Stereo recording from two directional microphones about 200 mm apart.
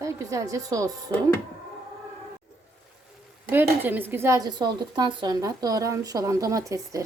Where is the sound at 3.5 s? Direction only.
10° right (ahead or behind).